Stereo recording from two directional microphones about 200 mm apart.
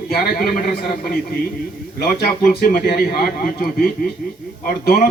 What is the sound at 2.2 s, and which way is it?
A man's voice, 50° left (ahead or behind).